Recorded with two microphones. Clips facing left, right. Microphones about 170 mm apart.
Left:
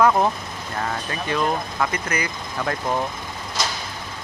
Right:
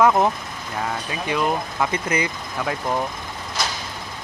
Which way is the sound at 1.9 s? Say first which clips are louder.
Right 3 dB; 25° right (ahead or behind).